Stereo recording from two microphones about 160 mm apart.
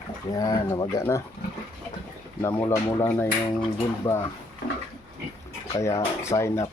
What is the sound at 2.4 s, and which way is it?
Speech, 15° left (ahead or behind).